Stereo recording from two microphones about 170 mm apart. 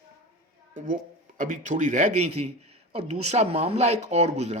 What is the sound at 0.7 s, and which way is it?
A man's voice, 50° right (ahead or behind).